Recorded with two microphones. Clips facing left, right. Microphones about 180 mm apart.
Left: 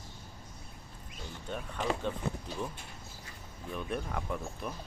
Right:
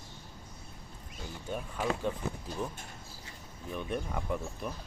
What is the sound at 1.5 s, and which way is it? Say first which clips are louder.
Speech: right 1 dB; 5° right (ahead or behind).